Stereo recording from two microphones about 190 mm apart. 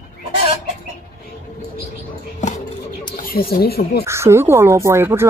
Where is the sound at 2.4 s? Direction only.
45° left (ahead or behind).